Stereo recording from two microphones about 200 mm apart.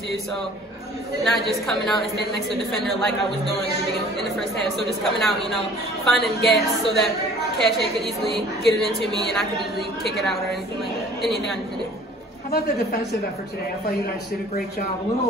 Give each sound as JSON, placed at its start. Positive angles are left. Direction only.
{"t": 1.2, "sound": "a woman's voice", "side_deg": 0}
{"t": 4.4, "sound": "a woman's voice", "side_deg": 0}
{"t": 12.4, "sound": "a woman's voice", "side_deg": 50}